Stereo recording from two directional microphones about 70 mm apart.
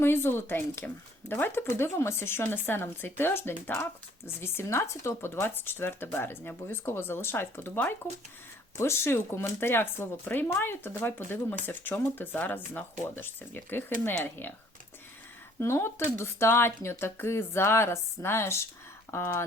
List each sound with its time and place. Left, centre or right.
0.0 s speech: left
15.5 s speech: left